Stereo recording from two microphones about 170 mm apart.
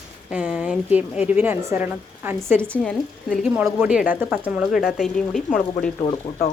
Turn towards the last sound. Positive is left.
turn(degrees=35)  # may be behind; listen again after turning